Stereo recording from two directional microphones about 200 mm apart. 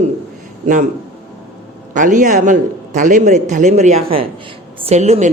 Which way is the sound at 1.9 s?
40° right (ahead or behind).